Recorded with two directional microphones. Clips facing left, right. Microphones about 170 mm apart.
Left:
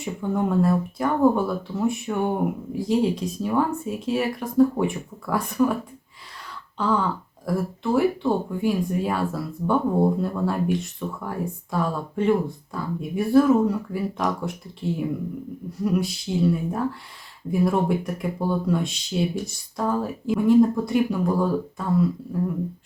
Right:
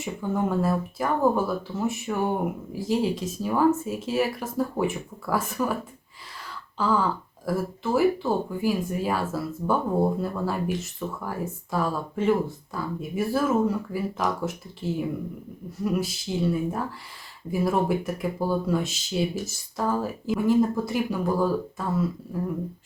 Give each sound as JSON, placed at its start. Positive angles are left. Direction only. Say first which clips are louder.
{"t": 0.0, "sound": "speech", "louder": "left 2 dB", "side_deg": 0}
{"t": 6.7, "sound": "speech", "louder": "left 1 dB", "side_deg": 0}